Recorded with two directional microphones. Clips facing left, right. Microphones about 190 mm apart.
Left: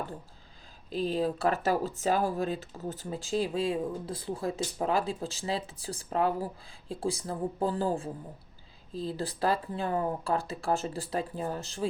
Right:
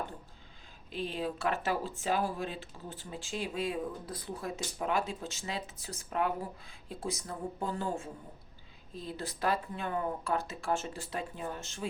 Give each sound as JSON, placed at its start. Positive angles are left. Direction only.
{"t": 0.9, "sound": "speech", "side_deg": 35}